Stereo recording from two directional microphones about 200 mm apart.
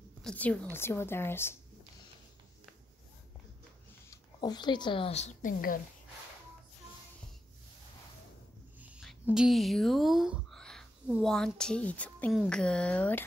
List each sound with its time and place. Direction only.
0.2 s a woman's voice: 5° left (ahead or behind)
4.1 s speech: 20° left (ahead or behind); by 5.8 s 40° left (ahead or behind)
8.7 s speech: 5° right (ahead or behind)